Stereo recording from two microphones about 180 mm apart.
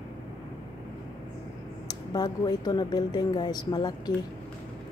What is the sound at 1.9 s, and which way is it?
Speech, 20° left (ahead or behind).